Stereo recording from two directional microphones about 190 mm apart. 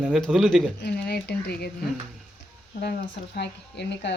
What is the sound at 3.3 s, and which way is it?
Speech, 65° left (ahead or behind).